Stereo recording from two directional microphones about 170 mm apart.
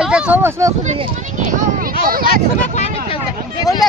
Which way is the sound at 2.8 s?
35° left (ahead or behind).